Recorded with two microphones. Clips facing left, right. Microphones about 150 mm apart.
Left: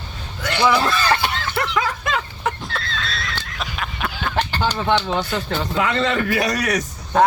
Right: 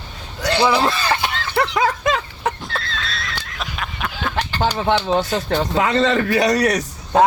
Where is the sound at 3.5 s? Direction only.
Centre (ahead or behind).